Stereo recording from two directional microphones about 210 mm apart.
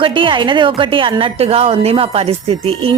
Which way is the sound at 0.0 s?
25° right (ahead or behind).